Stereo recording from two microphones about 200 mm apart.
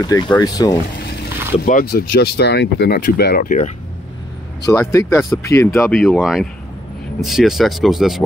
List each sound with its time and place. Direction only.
0.0 s speech: 20° left (ahead or behind)
1.6 s speech: 45° left (ahead or behind)
4.7 s speech: 15° left (ahead or behind)
5.9 s speech: centre (ahead or behind)